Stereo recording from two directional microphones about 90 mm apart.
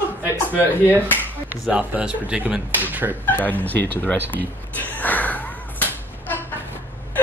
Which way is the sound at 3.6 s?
20° left (ahead or behind).